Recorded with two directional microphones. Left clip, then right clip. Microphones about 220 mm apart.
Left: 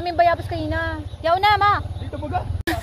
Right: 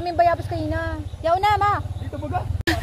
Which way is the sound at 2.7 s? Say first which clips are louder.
Right 2 dB; 15° right (ahead or behind).